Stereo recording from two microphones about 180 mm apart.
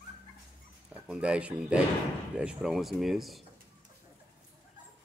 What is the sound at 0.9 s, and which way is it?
Speech, 5° right (ahead or behind).